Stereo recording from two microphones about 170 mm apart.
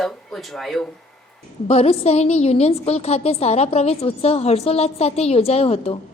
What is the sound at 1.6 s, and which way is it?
A woman's voice, 35° left (ahead or behind).